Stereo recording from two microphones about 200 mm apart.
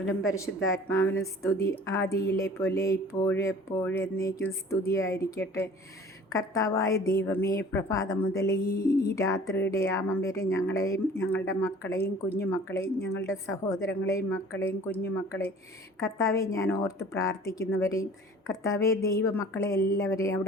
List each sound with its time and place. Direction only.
0.0 s speech: 85° left
0.9 s a woman's voice: 15° left (ahead or behind)
8.5 s a sound: 50° left (ahead or behind)
9.1 s a woman's voice: 15° left (ahead or behind)